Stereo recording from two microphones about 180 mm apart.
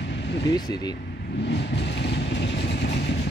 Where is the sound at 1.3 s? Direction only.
70° left (ahead or behind).